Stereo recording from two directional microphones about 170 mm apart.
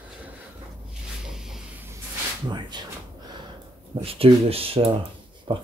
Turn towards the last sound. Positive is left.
turn(degrees=-30)  # may be behind; listen again after turning